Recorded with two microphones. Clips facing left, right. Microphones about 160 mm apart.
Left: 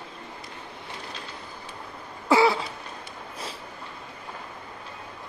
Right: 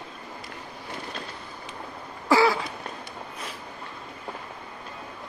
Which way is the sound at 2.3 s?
25° left (ahead or behind).